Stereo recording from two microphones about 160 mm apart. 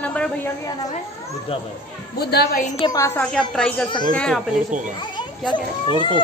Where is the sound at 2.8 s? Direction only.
20° left (ahead or behind).